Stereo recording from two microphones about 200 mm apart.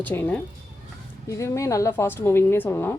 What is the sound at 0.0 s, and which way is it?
Speech, 10° left (ahead or behind).